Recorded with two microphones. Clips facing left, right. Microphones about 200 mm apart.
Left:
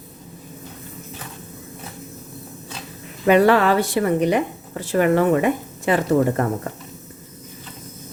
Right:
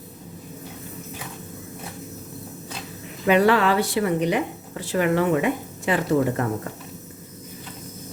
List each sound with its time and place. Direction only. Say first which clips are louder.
3.2 s speech: left 3 dB; 45° left (ahead or behind)